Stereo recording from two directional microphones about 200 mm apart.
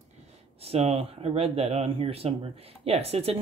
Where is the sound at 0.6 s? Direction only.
30° right (ahead or behind).